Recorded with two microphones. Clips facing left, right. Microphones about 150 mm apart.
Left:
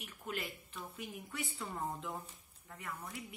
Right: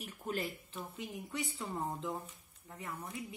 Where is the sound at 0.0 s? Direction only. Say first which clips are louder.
Right 4 dB; 35° right (ahead or behind).